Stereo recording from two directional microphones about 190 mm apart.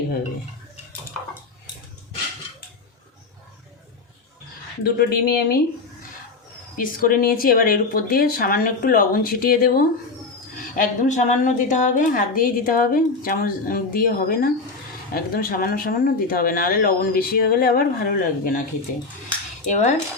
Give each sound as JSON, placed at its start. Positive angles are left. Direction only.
{"t": 4.8, "sound": "speech", "side_deg": 55}
{"t": 6.7, "sound": "a woman's voice", "side_deg": 50}
{"t": 19.6, "sound": "speech", "side_deg": 40}